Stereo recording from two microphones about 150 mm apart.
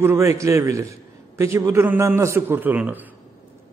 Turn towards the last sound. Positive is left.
turn(degrees=-10)  # may be behind; listen again after turning